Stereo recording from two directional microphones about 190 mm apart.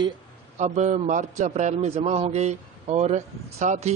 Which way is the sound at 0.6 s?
35° right (ahead or behind).